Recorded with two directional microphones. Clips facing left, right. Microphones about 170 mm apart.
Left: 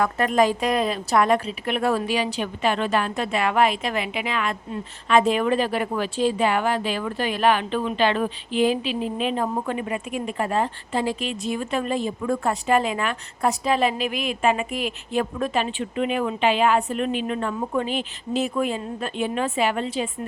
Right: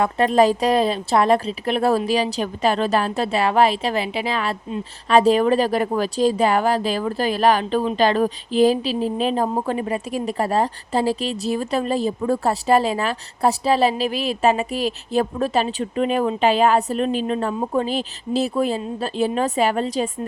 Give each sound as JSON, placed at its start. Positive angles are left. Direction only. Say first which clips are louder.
{"t": 0.0, "sound": "a woman's voice", "louder": "right 4 dB", "side_deg": -30}